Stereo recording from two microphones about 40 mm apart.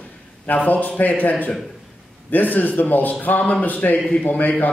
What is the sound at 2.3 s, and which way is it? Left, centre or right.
A man's voice, left.